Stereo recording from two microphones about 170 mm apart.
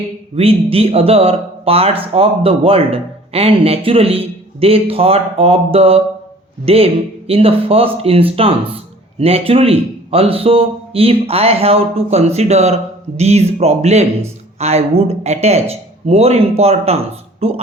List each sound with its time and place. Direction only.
0.3 s speech: 35° right (ahead or behind)